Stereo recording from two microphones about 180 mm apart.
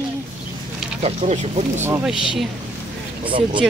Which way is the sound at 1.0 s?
35° right (ahead or behind).